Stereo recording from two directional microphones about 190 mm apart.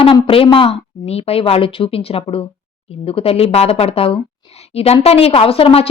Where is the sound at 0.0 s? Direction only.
30° left (ahead or behind).